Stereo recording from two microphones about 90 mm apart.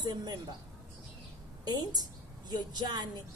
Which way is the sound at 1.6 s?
50° right (ahead or behind).